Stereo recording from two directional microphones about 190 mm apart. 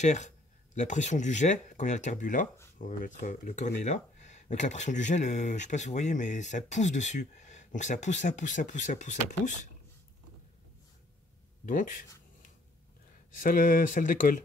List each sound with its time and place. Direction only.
0.0 s speech: 40° left (ahead or behind)
11.6 s speech: 45° left (ahead or behind)
13.4 s speech: 45° left (ahead or behind)